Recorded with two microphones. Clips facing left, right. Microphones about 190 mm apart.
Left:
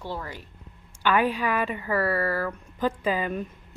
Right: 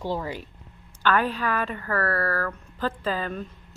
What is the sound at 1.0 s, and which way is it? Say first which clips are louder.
A woman's voice: left 1 dB; 10° left (ahead or behind).